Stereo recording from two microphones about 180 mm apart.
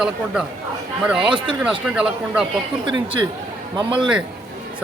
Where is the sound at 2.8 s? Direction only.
25° right (ahead or behind).